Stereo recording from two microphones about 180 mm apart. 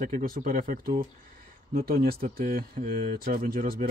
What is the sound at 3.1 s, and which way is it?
Speech, 55° right (ahead or behind).